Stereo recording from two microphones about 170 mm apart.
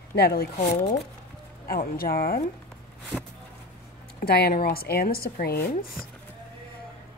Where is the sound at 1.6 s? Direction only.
65° left (ahead or behind).